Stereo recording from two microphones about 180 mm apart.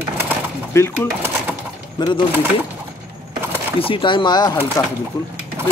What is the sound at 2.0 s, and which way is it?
Speech, 25° left (ahead or behind).